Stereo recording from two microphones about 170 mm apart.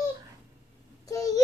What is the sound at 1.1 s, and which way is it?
Speech, 20° left (ahead or behind).